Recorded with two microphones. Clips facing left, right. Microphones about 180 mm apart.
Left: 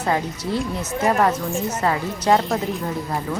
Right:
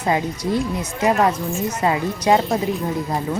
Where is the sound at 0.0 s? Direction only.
10° right (ahead or behind).